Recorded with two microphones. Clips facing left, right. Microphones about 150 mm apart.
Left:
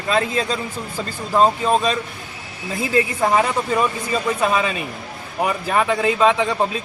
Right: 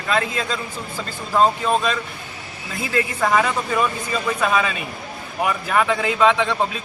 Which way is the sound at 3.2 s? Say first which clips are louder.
Left 1 dB; 30° left (ahead or behind).